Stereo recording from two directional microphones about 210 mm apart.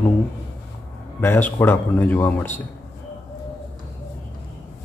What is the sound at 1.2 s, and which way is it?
Speech, 10° left (ahead or behind).